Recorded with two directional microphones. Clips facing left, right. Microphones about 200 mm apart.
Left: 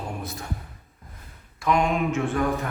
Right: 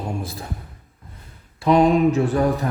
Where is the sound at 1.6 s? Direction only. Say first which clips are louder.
Right 8 dB; 35° right (ahead or behind).